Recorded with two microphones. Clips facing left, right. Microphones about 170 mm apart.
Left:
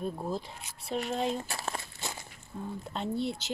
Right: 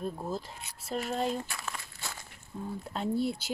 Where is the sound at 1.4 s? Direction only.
35° left (ahead or behind).